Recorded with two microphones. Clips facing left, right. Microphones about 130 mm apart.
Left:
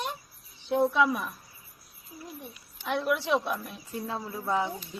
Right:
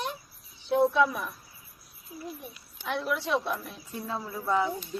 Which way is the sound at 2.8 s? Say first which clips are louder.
Left 2 dB; 5° left (ahead or behind).